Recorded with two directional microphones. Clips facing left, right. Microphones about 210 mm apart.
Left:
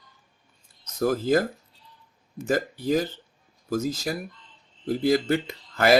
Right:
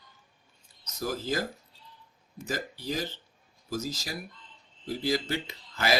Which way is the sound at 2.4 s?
55° left (ahead or behind).